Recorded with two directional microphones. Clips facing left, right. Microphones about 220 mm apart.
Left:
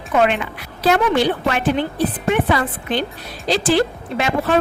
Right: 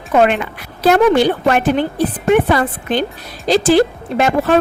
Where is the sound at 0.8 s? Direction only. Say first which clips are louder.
Right 5 dB; 45° right (ahead or behind).